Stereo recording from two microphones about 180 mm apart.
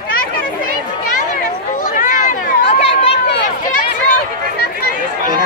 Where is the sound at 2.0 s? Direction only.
45° left (ahead or behind).